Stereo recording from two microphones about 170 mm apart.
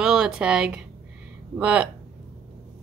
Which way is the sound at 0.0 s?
5° right (ahead or behind).